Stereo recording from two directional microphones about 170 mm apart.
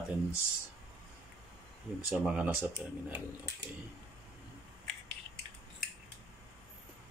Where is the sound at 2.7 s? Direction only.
10° right (ahead or behind).